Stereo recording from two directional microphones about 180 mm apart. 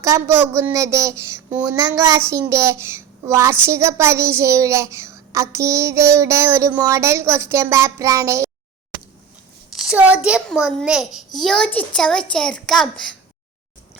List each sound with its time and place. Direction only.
0.0 s a child's voice: 15° right (ahead or behind)
9.7 s a sound: 5° right (ahead or behind)
10.2 s a child's voice: 5° right (ahead or behind)